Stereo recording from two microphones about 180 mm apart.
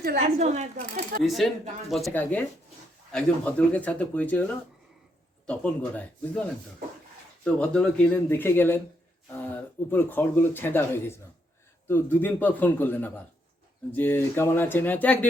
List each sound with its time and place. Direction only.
0.2 s speech: 40° right (ahead or behind)
1.2 s speech: centre (ahead or behind)
5.5 s speech: 5° left (ahead or behind)
7.4 s speech: 5° left (ahead or behind)